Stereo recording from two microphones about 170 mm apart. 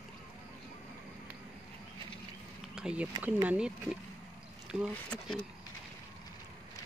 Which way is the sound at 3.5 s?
5° right (ahead or behind).